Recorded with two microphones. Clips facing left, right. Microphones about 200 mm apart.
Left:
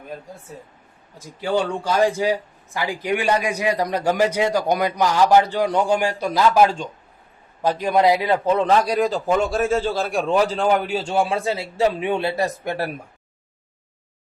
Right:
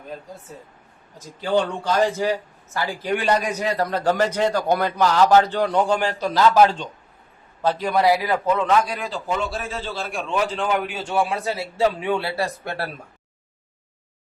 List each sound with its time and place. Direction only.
1.2 s a man's voice: 10° left (ahead or behind)